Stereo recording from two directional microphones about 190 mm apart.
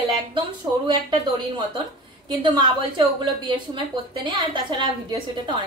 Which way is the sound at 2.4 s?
25° right (ahead or behind).